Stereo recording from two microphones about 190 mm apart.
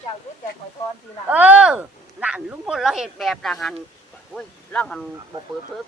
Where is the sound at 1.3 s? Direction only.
10° right (ahead or behind).